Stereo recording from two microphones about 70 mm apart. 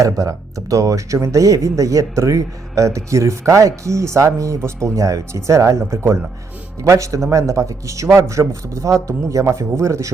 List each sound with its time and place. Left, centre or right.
0.0 s speech: right